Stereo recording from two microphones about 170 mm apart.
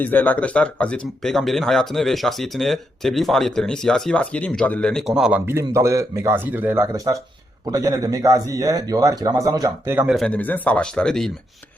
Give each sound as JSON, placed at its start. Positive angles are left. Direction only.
{"t": 0.0, "sound": "speech", "side_deg": 10}
{"t": 5.5, "sound": "speech", "side_deg": -15}
{"t": 10.1, "sound": "speech", "side_deg": 5}